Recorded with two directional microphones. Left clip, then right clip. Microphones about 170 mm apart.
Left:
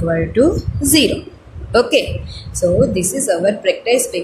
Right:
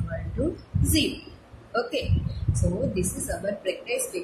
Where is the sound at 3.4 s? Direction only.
55° left (ahead or behind).